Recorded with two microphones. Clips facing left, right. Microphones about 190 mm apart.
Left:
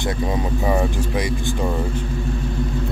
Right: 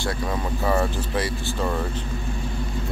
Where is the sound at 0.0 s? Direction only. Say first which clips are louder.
Left 4 dB; 15° left (ahead or behind).